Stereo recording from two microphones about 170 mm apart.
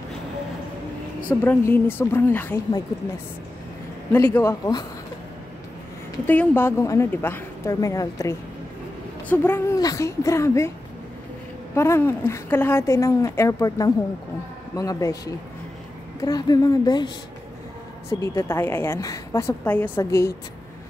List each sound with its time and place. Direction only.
1.4 s a woman's voice: 10° left (ahead or behind)
4.1 s a woman's voice: 10° left (ahead or behind)
6.2 s a woman's voice: 10° left (ahead or behind)
11.7 s a woman's voice: 15° left (ahead or behind)
18.2 s a woman's voice: 15° left (ahead or behind)